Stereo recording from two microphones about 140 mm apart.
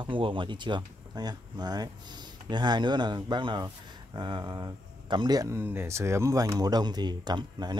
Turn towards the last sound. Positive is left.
turn(degrees=-30)  # may be behind; listen again after turning